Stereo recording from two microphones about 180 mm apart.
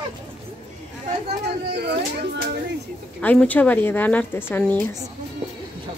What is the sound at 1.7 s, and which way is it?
Speech, 65° right (ahead or behind).